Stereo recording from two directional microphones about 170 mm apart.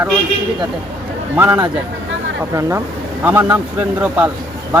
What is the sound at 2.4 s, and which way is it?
Speech, 15° right (ahead or behind).